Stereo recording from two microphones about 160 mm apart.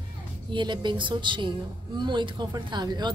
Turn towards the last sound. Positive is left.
turn(degrees=-25)  # may be behind; listen again after turning